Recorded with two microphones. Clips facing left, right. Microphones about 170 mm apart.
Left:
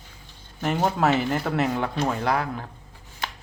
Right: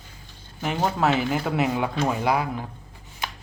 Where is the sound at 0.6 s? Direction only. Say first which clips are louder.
Left 1 dB; centre (ahead or behind).